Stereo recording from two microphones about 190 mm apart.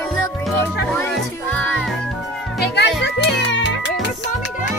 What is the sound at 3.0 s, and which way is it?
Music, 70° left (ahead or behind).